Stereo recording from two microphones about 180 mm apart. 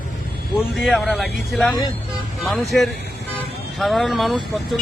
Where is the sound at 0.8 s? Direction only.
Centre (ahead or behind).